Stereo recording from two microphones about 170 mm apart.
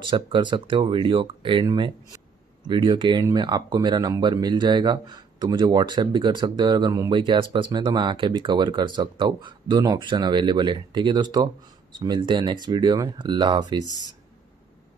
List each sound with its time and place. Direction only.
0.0 s speech: 30° right (ahead or behind)